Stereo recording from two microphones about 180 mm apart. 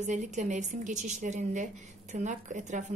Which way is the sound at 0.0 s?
45° right (ahead or behind).